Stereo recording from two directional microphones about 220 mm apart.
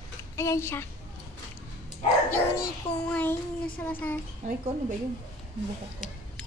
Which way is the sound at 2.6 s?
5° left (ahead or behind).